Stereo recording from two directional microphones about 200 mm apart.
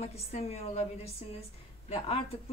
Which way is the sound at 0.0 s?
30° left (ahead or behind).